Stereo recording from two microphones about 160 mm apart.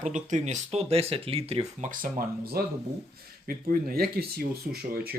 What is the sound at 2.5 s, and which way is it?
Speech, 70° right (ahead or behind).